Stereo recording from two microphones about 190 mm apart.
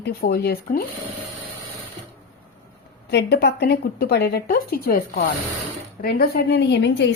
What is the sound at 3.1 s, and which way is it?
Speech, 60° left (ahead or behind).